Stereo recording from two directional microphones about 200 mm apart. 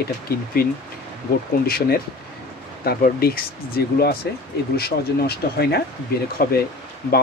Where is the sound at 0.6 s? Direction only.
50° left (ahead or behind).